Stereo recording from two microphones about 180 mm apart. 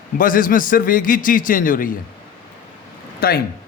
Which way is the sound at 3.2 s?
55° left (ahead or behind).